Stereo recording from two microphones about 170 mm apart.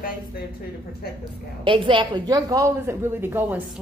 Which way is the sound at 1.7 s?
30° right (ahead or behind).